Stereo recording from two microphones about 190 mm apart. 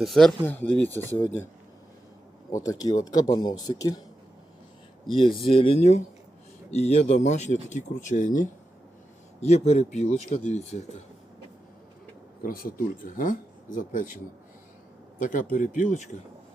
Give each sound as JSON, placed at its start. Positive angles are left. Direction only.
{"t": 0.0, "sound": "speech", "side_deg": 0}
{"t": 2.6, "sound": "speech", "side_deg": 20}
{"t": 5.0, "sound": "speech", "side_deg": 25}
{"t": 12.4, "sound": "speech", "side_deg": 50}
{"t": 15.2, "sound": "speech", "side_deg": 45}